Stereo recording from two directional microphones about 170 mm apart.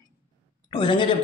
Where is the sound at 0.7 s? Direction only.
30° left (ahead or behind).